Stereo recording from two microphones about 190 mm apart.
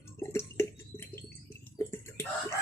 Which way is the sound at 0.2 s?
15° left (ahead or behind).